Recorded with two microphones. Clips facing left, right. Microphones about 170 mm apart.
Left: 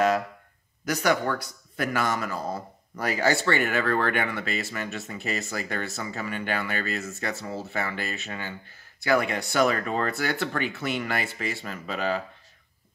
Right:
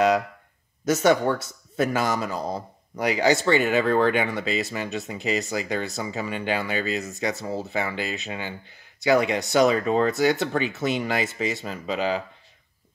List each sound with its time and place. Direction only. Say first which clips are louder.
0.8 s speech: right 5 dB; 25° right (ahead or behind)